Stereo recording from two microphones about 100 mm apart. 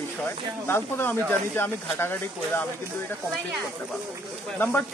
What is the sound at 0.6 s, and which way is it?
Speech, 25° left (ahead or behind).